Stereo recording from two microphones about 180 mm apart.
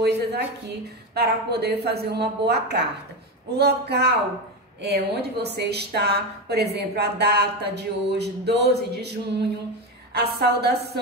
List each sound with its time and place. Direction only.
0.0 s a woman's voice: 65° right (ahead or behind)
10.1 s a woman's voice: 65° right (ahead or behind)